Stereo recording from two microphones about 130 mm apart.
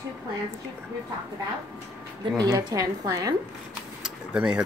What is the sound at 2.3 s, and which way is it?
Speech, 25° right (ahead or behind).